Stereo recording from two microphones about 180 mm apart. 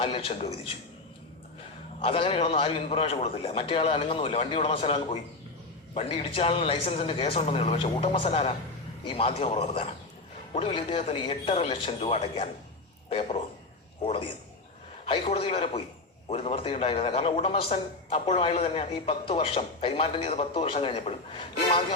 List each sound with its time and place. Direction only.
0.0 s a man's voice: 30° left (ahead or behind)
2.0 s a man's voice: 30° left (ahead or behind)